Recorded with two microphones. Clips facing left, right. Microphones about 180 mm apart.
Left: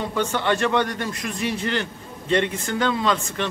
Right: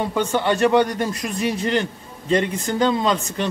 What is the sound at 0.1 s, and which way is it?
Speech, 15° right (ahead or behind).